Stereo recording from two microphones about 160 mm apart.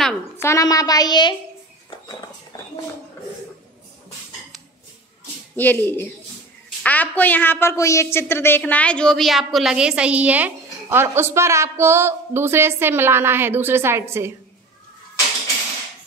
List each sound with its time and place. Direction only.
0.4 s a woman's voice: 20° left (ahead or behind)
5.6 s a woman's voice: 10° left (ahead or behind); by 14.3 s 15° right (ahead or behind)